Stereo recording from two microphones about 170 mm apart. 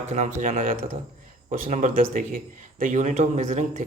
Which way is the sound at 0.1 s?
45° right (ahead or behind).